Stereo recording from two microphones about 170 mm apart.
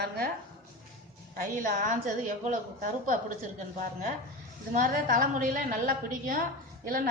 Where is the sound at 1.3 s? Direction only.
50° right (ahead or behind).